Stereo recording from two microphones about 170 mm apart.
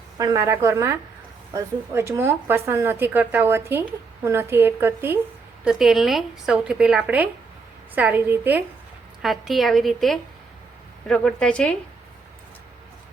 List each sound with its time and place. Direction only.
0.2 s speech: 20° right (ahead or behind)
5.6 s speech: centre (ahead or behind)
9.2 s speech: centre (ahead or behind)